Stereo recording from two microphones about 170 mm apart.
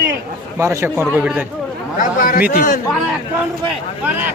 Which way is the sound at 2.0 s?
50° left (ahead or behind).